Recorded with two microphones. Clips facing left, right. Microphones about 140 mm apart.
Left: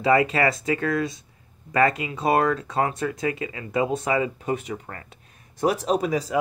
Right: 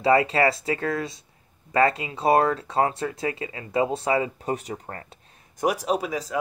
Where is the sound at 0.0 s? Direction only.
30° right (ahead or behind).